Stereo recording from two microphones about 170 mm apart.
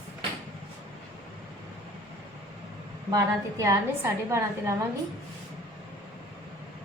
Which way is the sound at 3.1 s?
20° right (ahead or behind).